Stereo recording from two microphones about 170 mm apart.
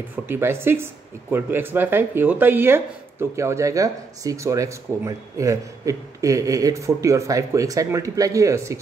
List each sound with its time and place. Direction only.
0.1 s speech: 15° right (ahead or behind)